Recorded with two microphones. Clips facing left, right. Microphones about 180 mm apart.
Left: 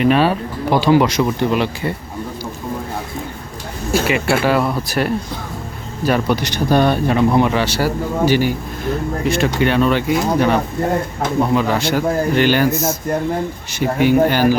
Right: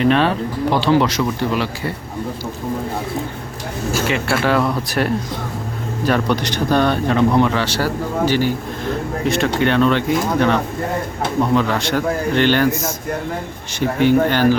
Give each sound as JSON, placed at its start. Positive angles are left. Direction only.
{"t": 0.0, "sound": "speech", "side_deg": 10}
{"t": 4.0, "sound": "speech", "side_deg": 5}
{"t": 13.7, "sound": "speech", "side_deg": 10}